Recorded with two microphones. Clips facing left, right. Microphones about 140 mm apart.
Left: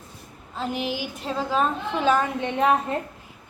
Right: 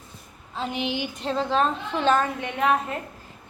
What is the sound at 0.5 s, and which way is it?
A woman's voice, centre (ahead or behind).